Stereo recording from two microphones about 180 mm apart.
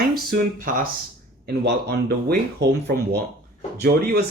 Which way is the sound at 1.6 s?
65° right (ahead or behind).